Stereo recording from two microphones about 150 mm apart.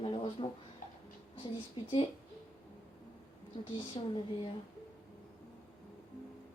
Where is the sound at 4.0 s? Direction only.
35° left (ahead or behind).